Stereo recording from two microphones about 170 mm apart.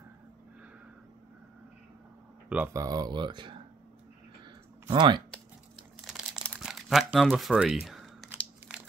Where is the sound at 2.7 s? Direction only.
20° right (ahead or behind).